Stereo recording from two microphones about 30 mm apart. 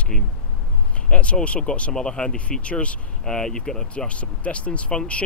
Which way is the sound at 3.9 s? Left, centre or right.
Left.